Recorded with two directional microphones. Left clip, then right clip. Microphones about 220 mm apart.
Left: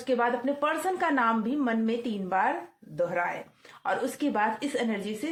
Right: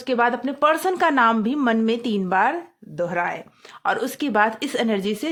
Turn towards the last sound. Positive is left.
turn(degrees=-50)  # may be behind; listen again after turning